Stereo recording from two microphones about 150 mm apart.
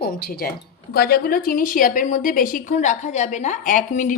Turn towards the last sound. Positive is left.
turn(degrees=60)  # may be behind; listen again after turning